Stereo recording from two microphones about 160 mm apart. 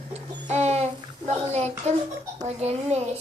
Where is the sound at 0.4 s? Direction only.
45° right (ahead or behind).